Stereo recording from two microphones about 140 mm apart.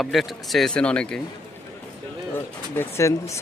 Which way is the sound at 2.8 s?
20° left (ahead or behind).